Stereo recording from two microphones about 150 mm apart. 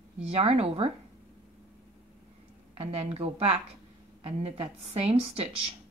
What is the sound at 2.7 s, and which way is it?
A woman's voice, 40° right (ahead or behind).